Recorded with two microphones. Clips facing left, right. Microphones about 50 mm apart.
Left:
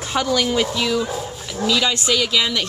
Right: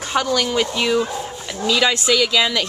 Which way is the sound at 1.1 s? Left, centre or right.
Centre.